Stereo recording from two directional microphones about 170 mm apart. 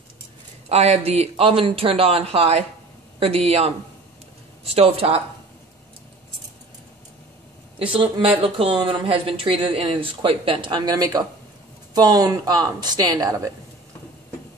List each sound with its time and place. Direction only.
0.7 s speech: 40° right (ahead or behind)
7.8 s speech: 30° right (ahead or behind)